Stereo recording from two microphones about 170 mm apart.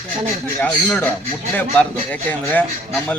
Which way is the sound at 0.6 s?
5° left (ahead or behind).